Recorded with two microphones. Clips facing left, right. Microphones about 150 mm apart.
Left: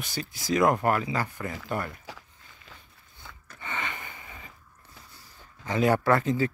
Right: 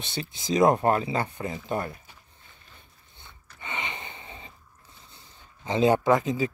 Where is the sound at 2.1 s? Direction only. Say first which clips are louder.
Left 9 dB; 90° left.